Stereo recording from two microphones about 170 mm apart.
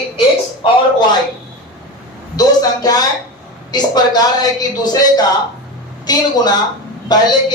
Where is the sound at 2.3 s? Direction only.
20° left (ahead or behind).